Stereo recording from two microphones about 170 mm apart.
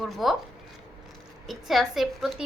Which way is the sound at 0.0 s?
Centre (ahead or behind).